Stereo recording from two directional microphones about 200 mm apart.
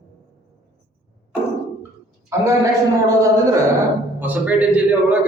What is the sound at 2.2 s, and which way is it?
Speech, 15° right (ahead or behind).